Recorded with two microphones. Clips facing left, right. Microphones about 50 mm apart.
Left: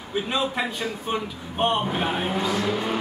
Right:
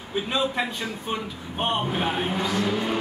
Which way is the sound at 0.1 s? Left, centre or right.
Centre.